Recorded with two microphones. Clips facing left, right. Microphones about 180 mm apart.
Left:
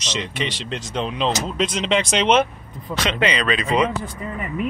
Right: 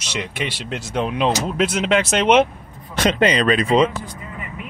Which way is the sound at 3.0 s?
45° right (ahead or behind).